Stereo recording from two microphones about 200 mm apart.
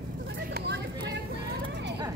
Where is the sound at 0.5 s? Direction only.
60° right (ahead or behind).